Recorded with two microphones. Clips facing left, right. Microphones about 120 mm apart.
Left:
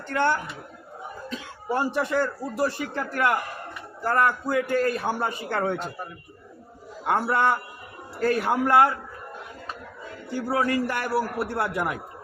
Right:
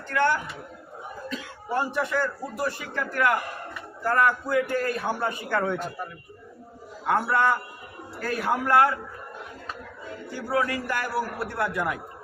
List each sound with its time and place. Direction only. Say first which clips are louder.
0.1 s speech: even; 30° left (ahead or behind)
7.1 s speech: even; 25° left (ahead or behind)
10.5 s speech: left 1 dB; 30° left (ahead or behind)